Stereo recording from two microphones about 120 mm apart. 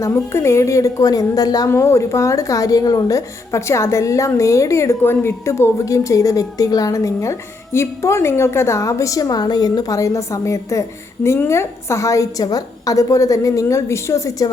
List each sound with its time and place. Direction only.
0.0 s a woman's voice: 20° left (ahead or behind)